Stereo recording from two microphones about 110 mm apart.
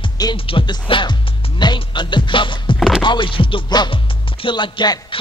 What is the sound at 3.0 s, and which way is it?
Music, 50° left (ahead or behind).